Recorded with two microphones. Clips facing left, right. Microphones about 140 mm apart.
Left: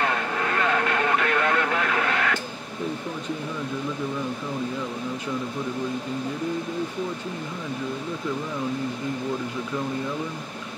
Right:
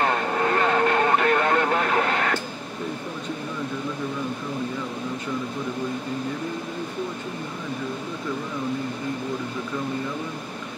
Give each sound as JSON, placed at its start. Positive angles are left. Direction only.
{"t": 0.0, "sound": "vehicle", "side_deg": -35}